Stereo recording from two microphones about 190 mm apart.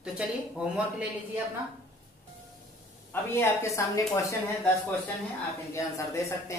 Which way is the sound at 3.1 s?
15° left (ahead or behind).